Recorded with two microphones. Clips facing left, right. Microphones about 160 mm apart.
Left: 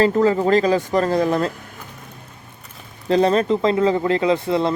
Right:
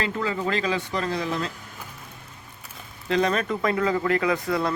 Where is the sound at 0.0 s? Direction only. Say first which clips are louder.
Left 11 dB; 40° left (ahead or behind).